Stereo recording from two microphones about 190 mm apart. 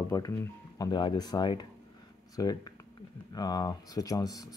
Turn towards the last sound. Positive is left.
turn(degrees=20)  # may be behind; listen again after turning